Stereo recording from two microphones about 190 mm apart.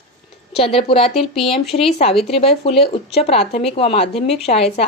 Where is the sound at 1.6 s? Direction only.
Centre (ahead or behind).